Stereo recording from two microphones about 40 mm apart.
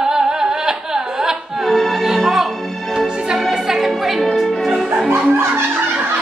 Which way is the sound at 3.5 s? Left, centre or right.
Centre.